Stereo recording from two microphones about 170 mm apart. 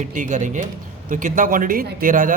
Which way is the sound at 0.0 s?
45° right (ahead or behind).